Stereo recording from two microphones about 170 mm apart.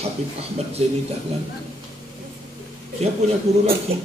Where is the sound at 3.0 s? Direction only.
35° right (ahead or behind).